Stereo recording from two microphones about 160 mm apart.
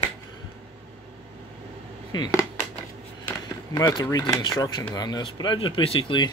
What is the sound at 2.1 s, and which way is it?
Speech, 25° left (ahead or behind).